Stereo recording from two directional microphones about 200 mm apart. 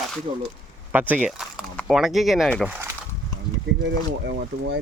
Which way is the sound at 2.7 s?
10° right (ahead or behind).